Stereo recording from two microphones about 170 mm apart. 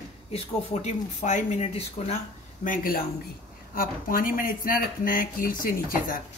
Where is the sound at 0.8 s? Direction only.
45° left (ahead or behind).